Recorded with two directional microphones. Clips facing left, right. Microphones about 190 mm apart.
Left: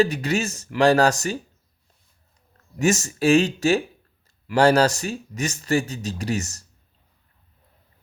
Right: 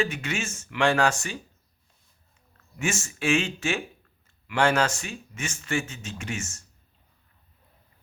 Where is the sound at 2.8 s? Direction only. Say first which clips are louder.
Left 8 dB; 40° left (ahead or behind).